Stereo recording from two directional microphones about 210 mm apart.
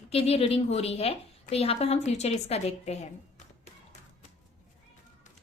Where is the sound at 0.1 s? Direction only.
30° left (ahead or behind).